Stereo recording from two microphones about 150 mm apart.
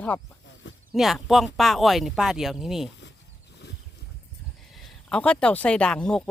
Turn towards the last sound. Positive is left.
turn(degrees=5)  # may be behind; listen again after turning